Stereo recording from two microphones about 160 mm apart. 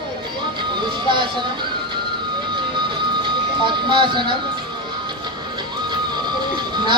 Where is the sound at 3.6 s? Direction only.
30° right (ahead or behind).